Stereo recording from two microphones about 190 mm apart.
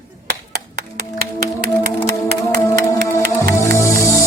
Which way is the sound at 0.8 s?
55° right (ahead or behind).